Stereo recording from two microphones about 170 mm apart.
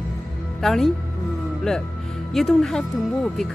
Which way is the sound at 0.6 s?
Centre (ahead or behind).